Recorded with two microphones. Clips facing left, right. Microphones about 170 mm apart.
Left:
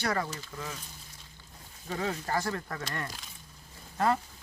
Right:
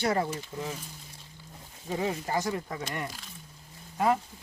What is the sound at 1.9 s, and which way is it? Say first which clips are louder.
Speech: right 2 dB; 15° right (ahead or behind).